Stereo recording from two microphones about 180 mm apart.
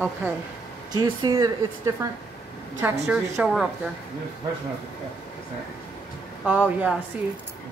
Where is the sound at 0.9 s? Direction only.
20° right (ahead or behind).